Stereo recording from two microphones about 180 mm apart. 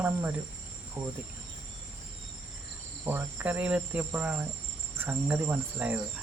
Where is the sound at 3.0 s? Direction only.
10° right (ahead or behind).